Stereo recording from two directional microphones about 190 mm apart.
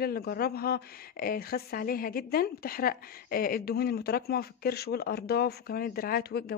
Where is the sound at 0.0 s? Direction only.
55° left (ahead or behind).